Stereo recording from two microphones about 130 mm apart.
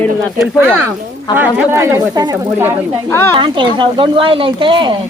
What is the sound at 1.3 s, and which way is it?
Speech, 15° right (ahead or behind).